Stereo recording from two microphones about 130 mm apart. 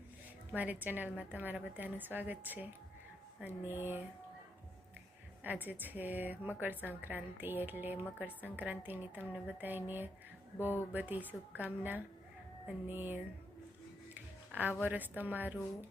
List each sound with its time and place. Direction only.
0.5 s a woman's voice: 15° right (ahead or behind)
5.6 s a woman's voice: 15° right (ahead or behind)